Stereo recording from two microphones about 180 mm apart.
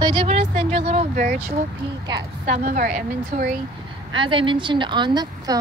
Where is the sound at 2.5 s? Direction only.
50° right (ahead or behind).